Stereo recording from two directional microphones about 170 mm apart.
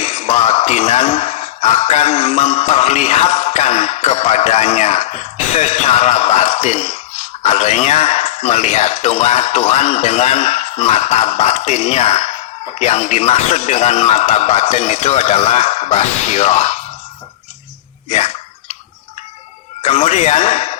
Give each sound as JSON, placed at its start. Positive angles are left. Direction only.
{"t": 0.0, "sound": "speech", "side_deg": 40}
{"t": 18.1, "sound": "hiccup", "side_deg": 45}
{"t": 19.8, "sound": "speech", "side_deg": 35}